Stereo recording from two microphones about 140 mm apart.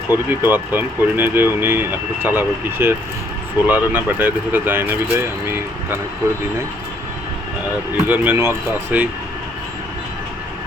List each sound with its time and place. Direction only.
0.1 s speech: 15° right (ahead or behind)
7.9 s speech: 10° right (ahead or behind)